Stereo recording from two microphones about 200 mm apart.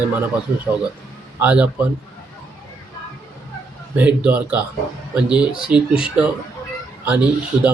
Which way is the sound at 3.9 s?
5° right (ahead or behind).